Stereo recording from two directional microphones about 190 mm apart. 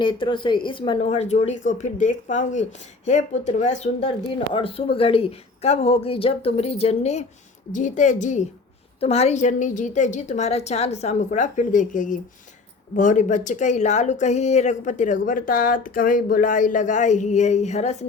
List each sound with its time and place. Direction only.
0.0 s speech: 25° left (ahead or behind)